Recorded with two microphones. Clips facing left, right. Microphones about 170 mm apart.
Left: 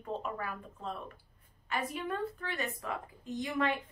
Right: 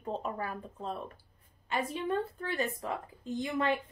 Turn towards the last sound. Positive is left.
turn(degrees=-30)  # may be behind; listen again after turning